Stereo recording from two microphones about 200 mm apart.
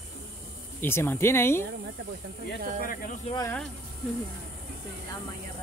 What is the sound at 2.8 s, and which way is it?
Speech, 45° left (ahead or behind).